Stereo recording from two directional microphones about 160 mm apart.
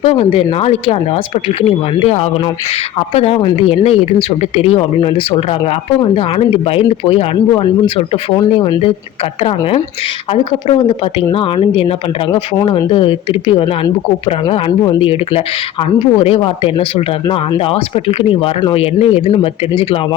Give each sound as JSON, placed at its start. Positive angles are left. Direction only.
{"t": 0.0, "sound": "speech", "side_deg": 40}